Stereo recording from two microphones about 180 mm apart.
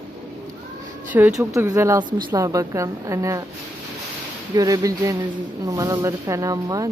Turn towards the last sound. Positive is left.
turn(degrees=-20)  # may be behind; listen again after turning